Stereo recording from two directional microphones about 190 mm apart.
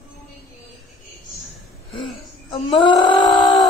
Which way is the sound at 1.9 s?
25° left (ahead or behind).